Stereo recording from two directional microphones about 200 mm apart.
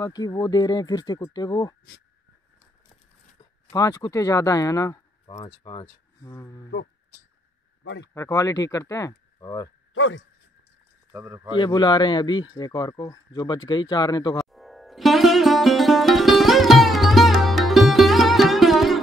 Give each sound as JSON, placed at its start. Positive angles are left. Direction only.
{"t": 0.0, "sound": "a man's voice", "side_deg": 20}
{"t": 3.7, "sound": "speech", "side_deg": 15}
{"t": 7.8, "sound": "speech", "side_deg": 65}
{"t": 8.1, "sound": "speech", "side_deg": 15}
{"t": 9.9, "sound": "speech", "side_deg": 75}
{"t": 11.1, "sound": "speech", "side_deg": -10}
{"t": 11.5, "sound": "a man's voice", "side_deg": 20}
{"t": 14.5, "sound": "sitar", "side_deg": 0}